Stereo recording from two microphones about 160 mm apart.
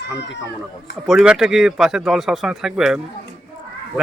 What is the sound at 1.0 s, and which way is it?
Speech, 5° right (ahead or behind).